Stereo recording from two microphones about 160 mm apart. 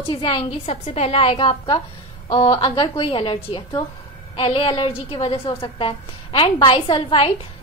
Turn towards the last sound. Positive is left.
turn(degrees=35)  # may be behind; listen again after turning